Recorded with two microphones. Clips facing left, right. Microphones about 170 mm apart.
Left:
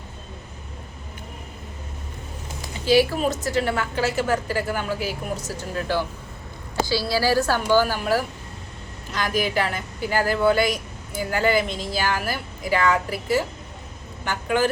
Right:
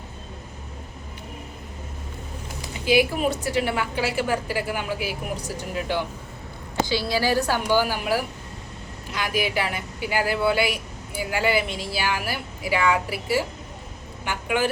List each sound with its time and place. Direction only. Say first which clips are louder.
2.8 s speech: left 2 dB; 15° right (ahead or behind)